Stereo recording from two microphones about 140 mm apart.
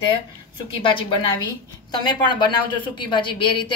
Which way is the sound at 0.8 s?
35° left (ahead or behind).